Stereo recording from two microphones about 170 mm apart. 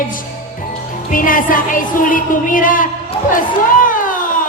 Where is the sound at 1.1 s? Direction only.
55° left (ahead or behind).